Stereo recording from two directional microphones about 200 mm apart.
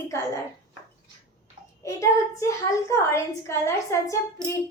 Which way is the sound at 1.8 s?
15° left (ahead or behind).